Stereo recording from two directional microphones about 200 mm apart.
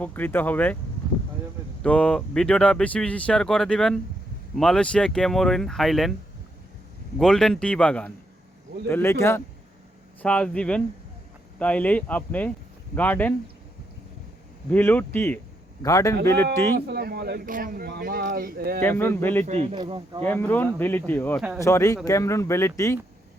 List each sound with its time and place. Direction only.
0.0 s speech: 10° left (ahead or behind)
1.8 s speech: 5° left (ahead or behind)
7.2 s speech: 5° left (ahead or behind)
14.7 s speech: 10° left (ahead or behind)
16.7 s speech: 55° right (ahead or behind)
18.8 s speech: 10° left (ahead or behind)
19.5 s a man's voice: 35° right (ahead or behind)
20.2 s speech: 10° left (ahead or behind)